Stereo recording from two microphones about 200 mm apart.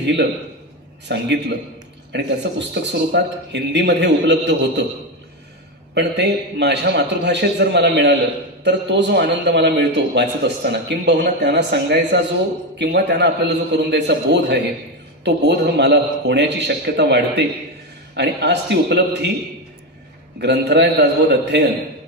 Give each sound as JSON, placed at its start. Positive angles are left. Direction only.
{"t": 0.0, "sound": "a man's voice", "side_deg": -60}
{"t": 5.9, "sound": "a man's voice", "side_deg": -60}
{"t": 20.3, "sound": "a man's voice", "side_deg": -55}